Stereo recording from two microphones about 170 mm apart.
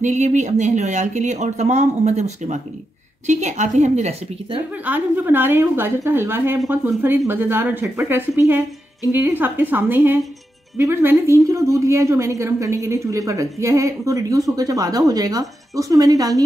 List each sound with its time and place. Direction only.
0.0 s speech: 45° right (ahead or behind)
4.8 s a woman's voice: 10° right (ahead or behind)